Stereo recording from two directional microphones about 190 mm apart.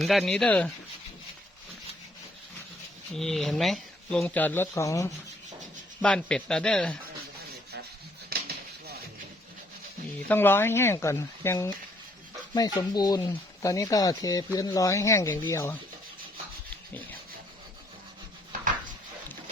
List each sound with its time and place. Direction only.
0.0 s speech: centre (ahead or behind)
3.2 s speech: centre (ahead or behind)
6.0 s speech: 5° left (ahead or behind)
8.3 s a sound: 55° right (ahead or behind)
10.2 s speech: 10° left (ahead or behind)